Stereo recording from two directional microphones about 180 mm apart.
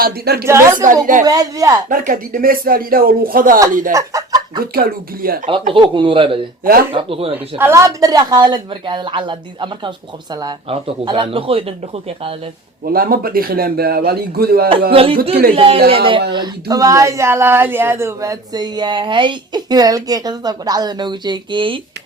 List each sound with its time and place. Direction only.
0.0 s speech: 60° right (ahead or behind)
0.4 s speech: 15° right (ahead or behind)
1.9 s speech: 50° right (ahead or behind)
3.9 s speech: 20° right (ahead or behind)
4.6 s speech: 55° right (ahead or behind)
5.5 s speech: 30° right (ahead or behind)
7.6 s speech: 15° right (ahead or behind); by 12.3 s 30° right (ahead or behind)
12.9 s speech: 55° right (ahead or behind)
14.8 s speech: 30° right (ahead or behind)